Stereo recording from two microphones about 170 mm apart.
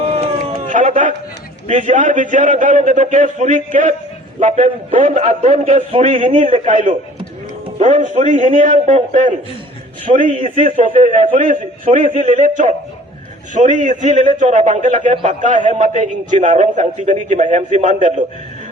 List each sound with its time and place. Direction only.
0.7 s a sound: 50° right (ahead or behind)
1.6 s a man's voice: 45° right (ahead or behind)
6.5 s a man's voice: 50° right (ahead or behind)